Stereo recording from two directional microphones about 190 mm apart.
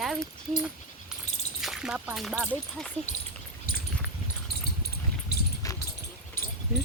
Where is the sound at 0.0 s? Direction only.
Centre (ahead or behind).